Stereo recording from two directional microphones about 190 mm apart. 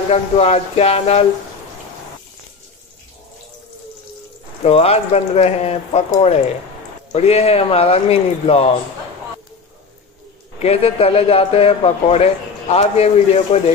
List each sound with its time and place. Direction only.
0.1 s a man's voice: 35° left (ahead or behind)
4.6 s a man's voice: 30° left (ahead or behind)
7.1 s a man's voice: 35° left (ahead or behind)
10.6 s a man's voice: 30° left (ahead or behind)